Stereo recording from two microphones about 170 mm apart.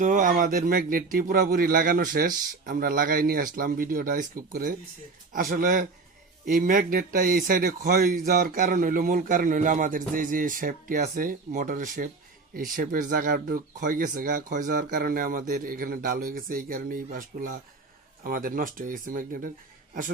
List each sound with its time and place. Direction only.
0.0 s a man's voice: 50° right (ahead or behind)